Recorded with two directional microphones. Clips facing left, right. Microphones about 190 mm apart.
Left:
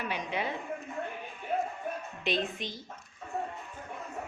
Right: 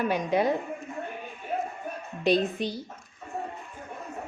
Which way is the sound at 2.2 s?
40° right (ahead or behind).